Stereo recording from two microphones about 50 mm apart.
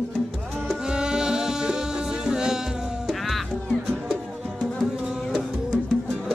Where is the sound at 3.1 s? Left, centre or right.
Centre.